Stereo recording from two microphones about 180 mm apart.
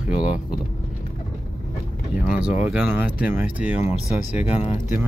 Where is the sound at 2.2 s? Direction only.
5° right (ahead or behind).